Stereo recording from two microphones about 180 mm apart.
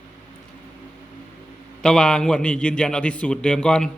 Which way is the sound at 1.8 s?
5° left (ahead or behind).